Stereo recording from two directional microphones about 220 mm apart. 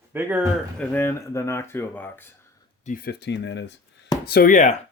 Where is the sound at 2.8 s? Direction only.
40° left (ahead or behind).